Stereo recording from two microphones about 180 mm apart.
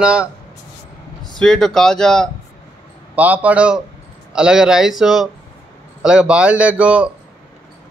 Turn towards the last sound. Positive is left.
turn(degrees=-5)  # may be behind; listen again after turning